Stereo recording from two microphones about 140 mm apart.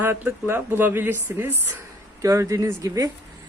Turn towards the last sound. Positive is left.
turn(degrees=-25)  # may be behind; listen again after turning